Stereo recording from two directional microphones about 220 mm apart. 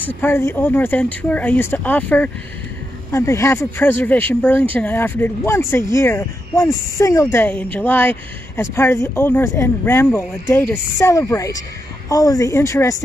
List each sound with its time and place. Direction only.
0.0 s speech: 10° left (ahead or behind)